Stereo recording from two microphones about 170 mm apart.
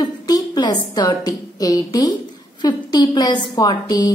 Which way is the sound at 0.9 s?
20° left (ahead or behind).